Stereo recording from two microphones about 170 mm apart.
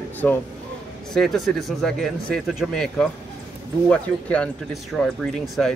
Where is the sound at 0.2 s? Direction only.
10° left (ahead or behind).